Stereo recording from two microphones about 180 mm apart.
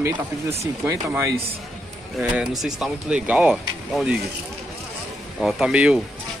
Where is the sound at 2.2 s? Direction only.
5° right (ahead or behind).